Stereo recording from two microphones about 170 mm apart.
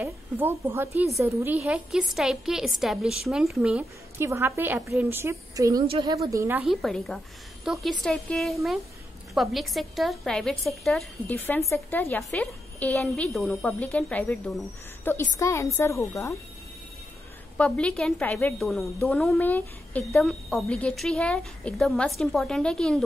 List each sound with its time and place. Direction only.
0.0 s a woman's voice: 15° right (ahead or behind)
6.6 s a woman's voice: centre (ahead or behind); by 16.3 s 20° left (ahead or behind)
17.6 s a woman's voice: 5° left (ahead or behind)